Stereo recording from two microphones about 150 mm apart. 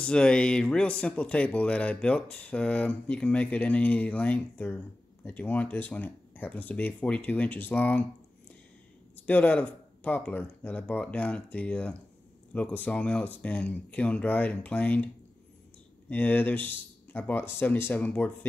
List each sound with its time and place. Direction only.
0.0 s speech: 5° left (ahead or behind)
9.1 s speech: 10° left (ahead or behind)
16.1 s speech: 10° left (ahead or behind)